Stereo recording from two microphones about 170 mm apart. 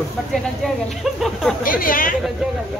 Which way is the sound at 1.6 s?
55° left (ahead or behind).